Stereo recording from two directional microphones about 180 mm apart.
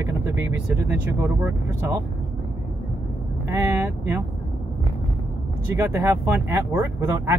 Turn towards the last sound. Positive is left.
turn(degrees=-15)  # may be behind; listen again after turning